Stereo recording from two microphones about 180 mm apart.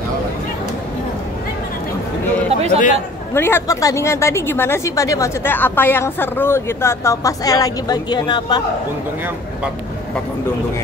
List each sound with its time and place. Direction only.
2.5 s chatter: 35° right (ahead or behind)
3.3 s a woman's voice: 15° left (ahead or behind)